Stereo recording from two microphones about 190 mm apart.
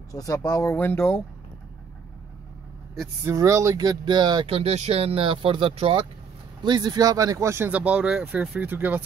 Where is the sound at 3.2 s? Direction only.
15° right (ahead or behind).